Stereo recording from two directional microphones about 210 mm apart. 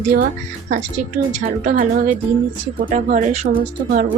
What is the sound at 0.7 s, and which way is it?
Speech, 35° right (ahead or behind).